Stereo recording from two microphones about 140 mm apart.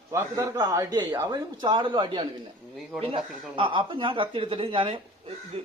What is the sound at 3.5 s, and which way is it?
Speech, 35° right (ahead or behind).